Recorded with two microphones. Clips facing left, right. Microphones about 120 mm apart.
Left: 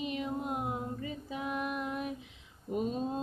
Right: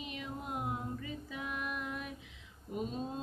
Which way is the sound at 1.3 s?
30° left (ahead or behind).